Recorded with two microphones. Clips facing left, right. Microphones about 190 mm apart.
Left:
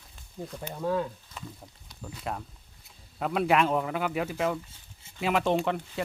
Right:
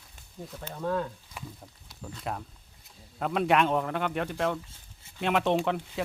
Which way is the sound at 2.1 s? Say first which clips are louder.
Even; centre (ahead or behind).